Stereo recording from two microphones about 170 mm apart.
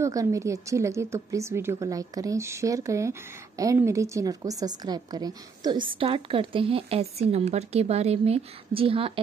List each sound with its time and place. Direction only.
0.0 s a woman's voice: 20° right (ahead or behind)